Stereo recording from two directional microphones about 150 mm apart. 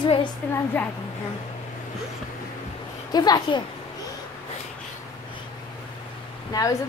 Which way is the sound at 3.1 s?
30° left (ahead or behind).